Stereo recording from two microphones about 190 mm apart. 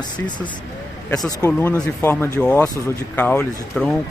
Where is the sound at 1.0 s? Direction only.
20° left (ahead or behind).